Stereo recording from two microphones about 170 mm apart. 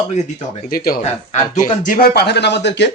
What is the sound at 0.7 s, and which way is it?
Speech, 60° left (ahead or behind).